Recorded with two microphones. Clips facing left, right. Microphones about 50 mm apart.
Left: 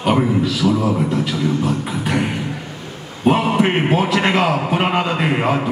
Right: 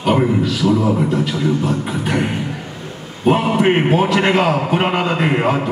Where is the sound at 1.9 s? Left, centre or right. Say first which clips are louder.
Right 1 dB; centre.